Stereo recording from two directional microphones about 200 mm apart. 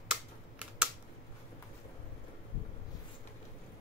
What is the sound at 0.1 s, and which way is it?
Typing, 5° right (ahead or behind).